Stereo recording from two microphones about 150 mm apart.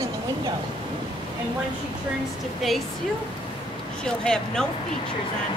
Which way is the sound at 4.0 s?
5° left (ahead or behind).